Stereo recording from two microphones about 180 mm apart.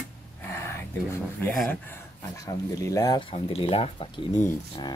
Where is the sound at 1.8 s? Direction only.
15° left (ahead or behind).